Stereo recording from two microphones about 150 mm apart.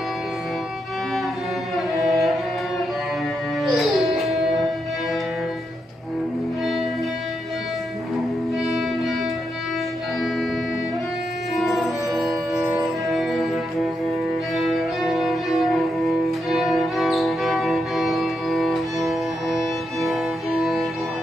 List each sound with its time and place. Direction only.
1.8 s music: centre (ahead or behind)
3.7 s music: centre (ahead or behind)
8.6 s music: centre (ahead or behind)
11.5 s music: centre (ahead or behind)
14.5 s music: centre (ahead or behind)